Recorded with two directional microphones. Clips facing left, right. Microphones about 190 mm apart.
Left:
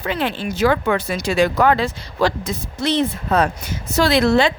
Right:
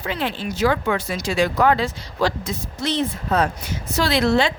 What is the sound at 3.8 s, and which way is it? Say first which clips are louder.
Speech: left 4 dB; 45° left (ahead or behind).